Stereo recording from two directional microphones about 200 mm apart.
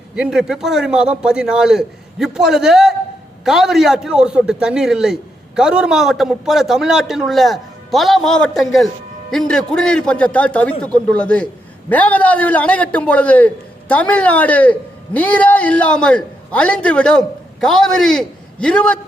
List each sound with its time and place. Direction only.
0.2 s a man's voice: 5° right (ahead or behind)